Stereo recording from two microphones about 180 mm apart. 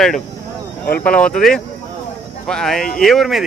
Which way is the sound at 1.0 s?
5° left (ahead or behind).